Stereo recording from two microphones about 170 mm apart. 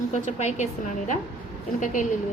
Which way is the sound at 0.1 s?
45° left (ahead or behind).